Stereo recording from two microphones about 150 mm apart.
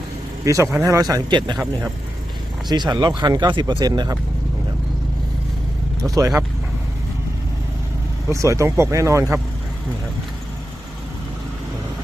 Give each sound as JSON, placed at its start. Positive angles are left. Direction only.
{"t": 0.4, "sound": "speech", "side_deg": -20}
{"t": 2.6, "sound": "speech", "side_deg": -30}
{"t": 6.0, "sound": "speech", "side_deg": -20}
{"t": 8.3, "sound": "speech", "side_deg": -20}